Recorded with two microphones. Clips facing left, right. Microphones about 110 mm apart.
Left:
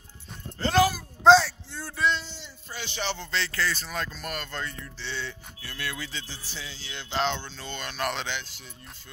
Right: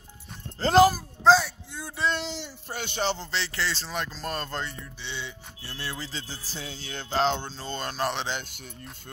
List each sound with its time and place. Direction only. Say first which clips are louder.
0.6 s speech: right 4 dB; 35° right (ahead or behind)
1.2 s a sound: left 3 dB; 5° right (ahead or behind)
2.1 s a sound: right 5 dB; 75° right (ahead or behind)
2.7 s music: right 4 dB; 50° right (ahead or behind)
3.3 s speech: left 1 dB; 25° right (ahead or behind)
4.8 s speech: left 2 dB; 15° right (ahead or behind)
5.6 s speech: even; 30° right (ahead or behind)
8.3 s music: right 2 dB; 50° right (ahead or behind)